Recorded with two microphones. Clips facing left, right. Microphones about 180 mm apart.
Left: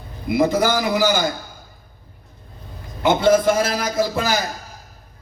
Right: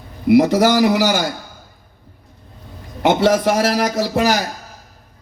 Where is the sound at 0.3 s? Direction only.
70° right (ahead or behind).